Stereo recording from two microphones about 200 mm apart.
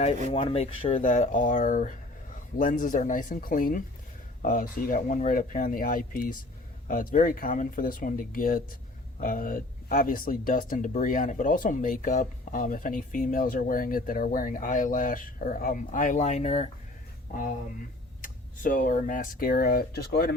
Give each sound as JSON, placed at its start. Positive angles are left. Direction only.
{"t": 0.0, "sound": "speech", "side_deg": 35}
{"t": 18.2, "sound": "speech", "side_deg": 40}